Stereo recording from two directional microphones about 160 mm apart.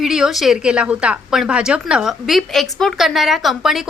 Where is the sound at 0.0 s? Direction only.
5° right (ahead or behind).